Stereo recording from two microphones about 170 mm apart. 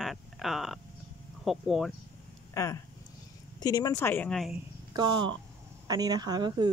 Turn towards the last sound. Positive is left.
turn(degrees=-25)  # may be behind; listen again after turning